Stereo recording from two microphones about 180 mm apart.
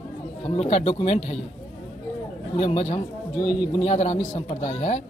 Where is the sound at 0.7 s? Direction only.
35° left (ahead or behind).